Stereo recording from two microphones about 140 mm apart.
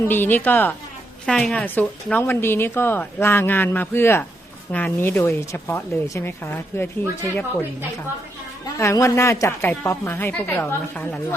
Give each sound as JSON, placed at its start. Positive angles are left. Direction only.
{"t": 0.0, "sound": "a woman's voice", "side_deg": 15}
{"t": 8.8, "sound": "a woman's voice", "side_deg": 20}